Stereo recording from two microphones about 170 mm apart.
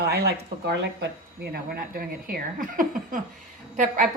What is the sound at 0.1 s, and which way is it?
Speech, 70° right (ahead or behind).